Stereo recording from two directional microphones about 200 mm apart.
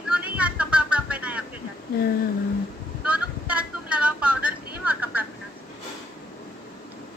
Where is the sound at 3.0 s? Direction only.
5° right (ahead or behind).